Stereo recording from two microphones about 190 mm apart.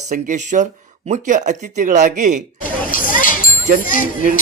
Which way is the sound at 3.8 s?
45° left (ahead or behind).